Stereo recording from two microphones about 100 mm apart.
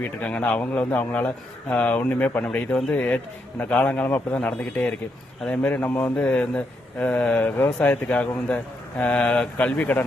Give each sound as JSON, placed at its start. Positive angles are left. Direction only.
{"t": 0.2, "sound": "a man's voice", "side_deg": 10}